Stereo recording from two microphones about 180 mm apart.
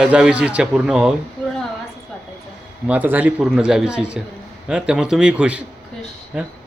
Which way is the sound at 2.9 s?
10° right (ahead or behind).